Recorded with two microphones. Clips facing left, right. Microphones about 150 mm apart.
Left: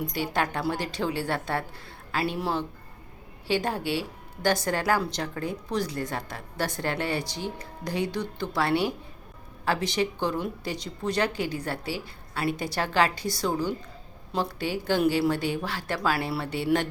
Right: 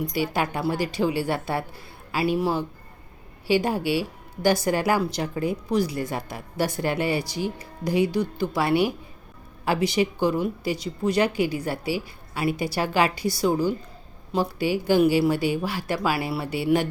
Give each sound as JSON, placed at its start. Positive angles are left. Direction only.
{"t": 0.1, "sound": "a woman's voice", "side_deg": -10}